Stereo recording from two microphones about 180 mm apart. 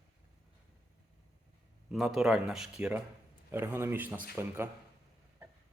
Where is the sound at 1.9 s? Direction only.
Centre (ahead or behind).